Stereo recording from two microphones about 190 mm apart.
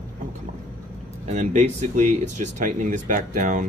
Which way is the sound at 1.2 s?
35° right (ahead or behind).